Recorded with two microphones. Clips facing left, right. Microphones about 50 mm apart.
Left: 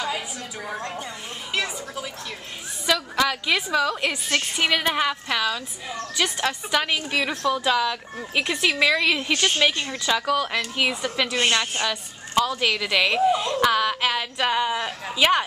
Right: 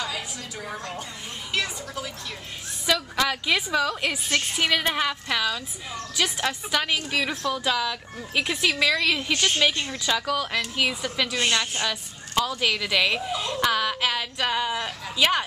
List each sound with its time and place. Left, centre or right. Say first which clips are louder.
1.5 s a woman's voice: left 1 dB; centre
11.3 s a woman's voice: left 3 dB; left
11.8 s a woman's voice: left 2 dB; centre